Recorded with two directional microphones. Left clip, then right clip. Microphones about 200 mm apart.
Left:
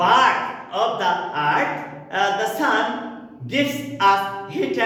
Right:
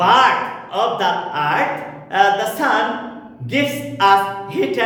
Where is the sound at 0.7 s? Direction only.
25° right (ahead or behind).